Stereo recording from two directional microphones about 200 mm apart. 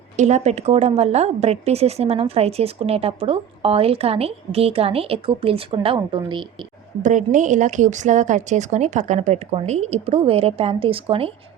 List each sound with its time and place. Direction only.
0.2 s a woman's voice: 35° right (ahead or behind)
7.0 s a woman's voice: 40° right (ahead or behind)